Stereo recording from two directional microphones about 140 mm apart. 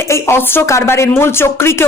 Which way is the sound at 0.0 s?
20° left (ahead or behind).